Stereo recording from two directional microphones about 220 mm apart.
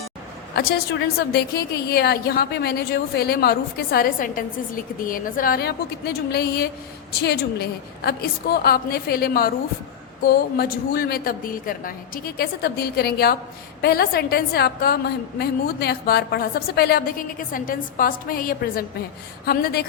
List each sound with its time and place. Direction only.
0.5 s a woman's voice: 45° left (ahead or behind)